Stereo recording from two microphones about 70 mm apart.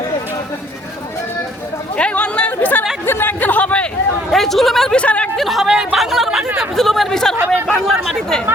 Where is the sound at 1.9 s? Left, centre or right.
Centre.